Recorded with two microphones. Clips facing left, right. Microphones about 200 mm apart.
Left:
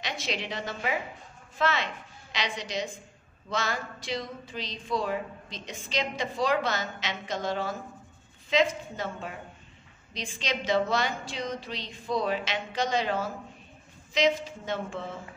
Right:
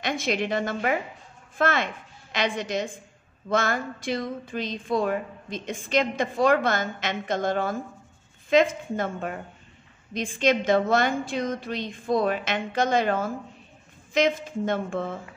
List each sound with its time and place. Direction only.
0.0 s a woman's voice: 50° right (ahead or behind)